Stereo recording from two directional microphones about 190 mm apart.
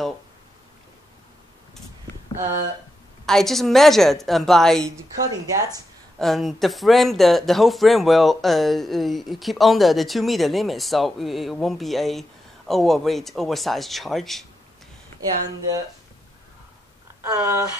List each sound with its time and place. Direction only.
3.3 s speech: centre (ahead or behind)
6.1 s speech: centre (ahead or behind)
15.1 s speech: 20° right (ahead or behind)
17.2 s speech: 15° right (ahead or behind)